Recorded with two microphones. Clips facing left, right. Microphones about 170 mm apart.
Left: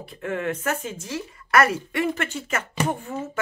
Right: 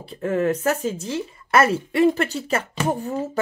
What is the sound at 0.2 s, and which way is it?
A woman's voice, 40° right (ahead or behind).